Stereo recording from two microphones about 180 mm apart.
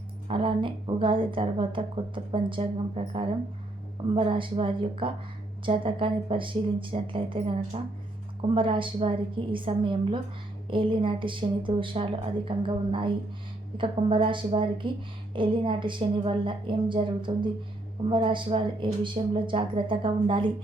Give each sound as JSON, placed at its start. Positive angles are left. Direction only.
{"t": 0.3, "sound": "a woman's voice", "side_deg": -30}